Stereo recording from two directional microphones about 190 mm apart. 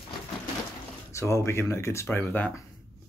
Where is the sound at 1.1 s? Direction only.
15° left (ahead or behind).